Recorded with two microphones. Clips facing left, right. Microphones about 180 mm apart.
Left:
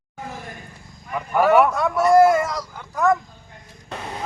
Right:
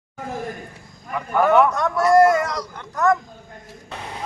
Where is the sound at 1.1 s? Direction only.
5° left (ahead or behind).